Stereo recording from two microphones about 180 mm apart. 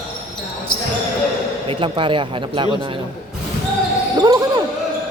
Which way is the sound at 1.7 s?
30° right (ahead or behind).